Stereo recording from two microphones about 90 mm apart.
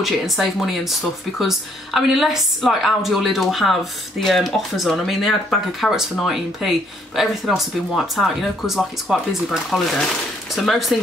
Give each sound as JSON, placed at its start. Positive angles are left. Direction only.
{"t": 0.0, "sound": "a woman's voice", "side_deg": 0}